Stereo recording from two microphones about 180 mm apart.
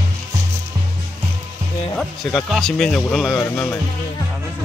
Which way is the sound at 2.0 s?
Centre (ahead or behind).